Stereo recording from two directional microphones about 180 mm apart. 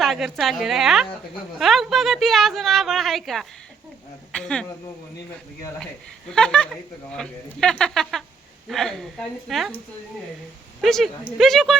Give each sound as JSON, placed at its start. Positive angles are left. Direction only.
{"t": 0.0, "sound": "speech", "side_deg": 0}
{"t": 6.3, "sound": "speech", "side_deg": 5}
{"t": 10.8, "sound": "a woman's voice", "side_deg": 0}